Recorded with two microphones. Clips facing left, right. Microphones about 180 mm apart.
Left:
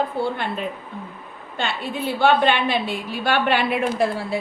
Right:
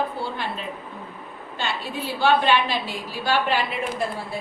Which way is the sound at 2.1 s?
60° left (ahead or behind).